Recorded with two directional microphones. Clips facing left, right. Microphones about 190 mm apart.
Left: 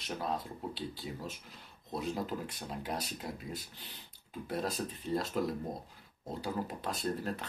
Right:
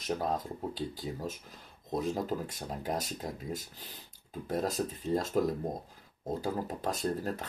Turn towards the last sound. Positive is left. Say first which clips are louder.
# right 3 dB
turn(degrees=-45)  # may be behind; listen again after turning